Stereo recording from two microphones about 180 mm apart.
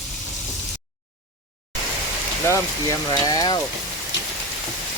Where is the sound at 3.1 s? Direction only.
20° left (ahead or behind).